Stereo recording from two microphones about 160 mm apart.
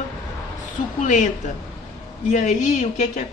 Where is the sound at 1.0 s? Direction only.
50° left (ahead or behind).